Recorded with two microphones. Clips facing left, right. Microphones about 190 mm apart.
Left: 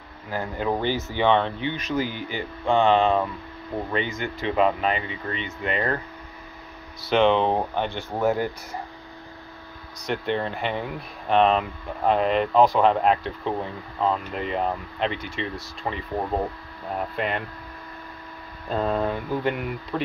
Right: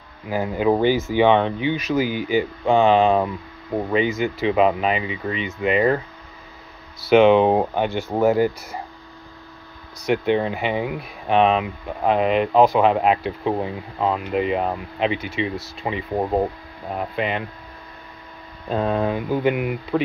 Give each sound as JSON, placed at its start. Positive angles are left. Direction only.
{"t": 0.3, "sound": "speech", "side_deg": -15}
{"t": 7.0, "sound": "speech", "side_deg": -10}
{"t": 10.0, "sound": "speech", "side_deg": -10}
{"t": 17.1, "sound": "speech", "side_deg": 0}
{"t": 18.8, "sound": "speech", "side_deg": -5}